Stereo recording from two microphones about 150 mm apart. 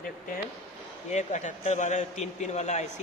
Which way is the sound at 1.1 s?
50° left (ahead or behind).